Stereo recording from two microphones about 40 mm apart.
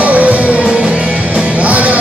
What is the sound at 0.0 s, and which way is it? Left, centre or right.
Music, right.